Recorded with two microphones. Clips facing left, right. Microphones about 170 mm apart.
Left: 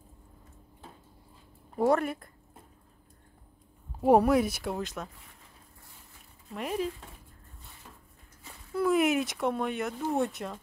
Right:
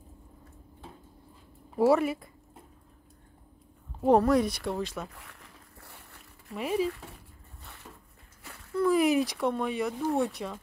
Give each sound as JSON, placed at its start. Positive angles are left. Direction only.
{"t": 1.8, "sound": "speech", "side_deg": -5}
{"t": 4.0, "sound": "speech", "side_deg": 10}
{"t": 5.1, "sound": "boat", "side_deg": -75}
{"t": 6.5, "sound": "speech", "side_deg": -5}
{"t": 8.7, "sound": "speech", "side_deg": 0}